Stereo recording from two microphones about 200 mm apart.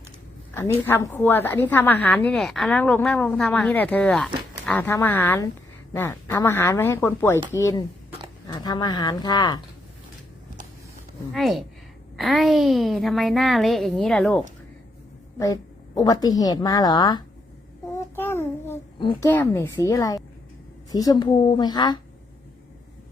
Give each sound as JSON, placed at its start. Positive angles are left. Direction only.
{"t": 0.5, "sound": "a woman's voice", "side_deg": 10}
{"t": 11.3, "sound": "a woman's voice", "side_deg": 0}
{"t": 16.0, "sound": "a woman's voice", "side_deg": 20}
{"t": 17.9, "sound": "child singing", "side_deg": 10}
{"t": 19.2, "sound": "a woman's voice", "side_deg": 10}